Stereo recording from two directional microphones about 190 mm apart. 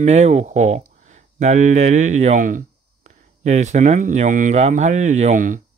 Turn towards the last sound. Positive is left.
turn(degrees=-45)  # may be behind; listen again after turning